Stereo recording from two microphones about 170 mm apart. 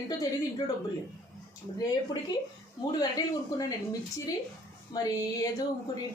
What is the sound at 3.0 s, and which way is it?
Speech, 20° left (ahead or behind).